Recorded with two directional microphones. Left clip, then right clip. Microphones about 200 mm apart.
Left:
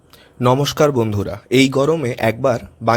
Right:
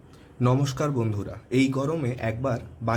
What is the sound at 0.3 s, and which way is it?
Speech, 40° left (ahead or behind).